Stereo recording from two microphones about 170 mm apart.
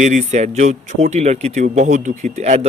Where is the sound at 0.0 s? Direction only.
45° right (ahead or behind).